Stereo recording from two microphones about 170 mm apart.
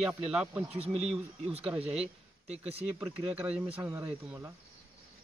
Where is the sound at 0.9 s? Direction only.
40° right (ahead or behind).